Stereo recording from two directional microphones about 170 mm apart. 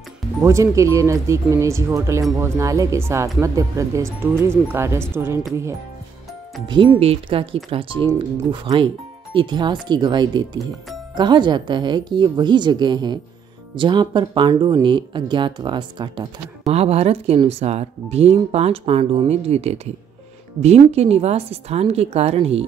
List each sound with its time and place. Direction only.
0.4 s speech: 15° right (ahead or behind)
6.7 s a woman's voice: 30° right (ahead or behind)
16.6 s a woman's voice: 35° right (ahead or behind)